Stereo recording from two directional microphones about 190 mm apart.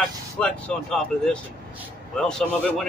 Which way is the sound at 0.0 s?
5° left (ahead or behind).